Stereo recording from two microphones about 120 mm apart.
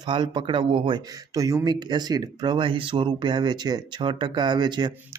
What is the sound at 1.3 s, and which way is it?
Speech, 30° right (ahead or behind).